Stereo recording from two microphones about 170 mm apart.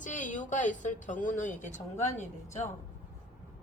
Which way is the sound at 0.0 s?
50° left (ahead or behind).